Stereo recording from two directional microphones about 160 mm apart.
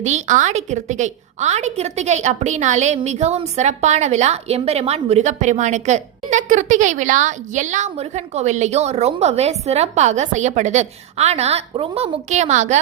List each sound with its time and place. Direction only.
0.0 s a woman's voice: 45° right (ahead or behind)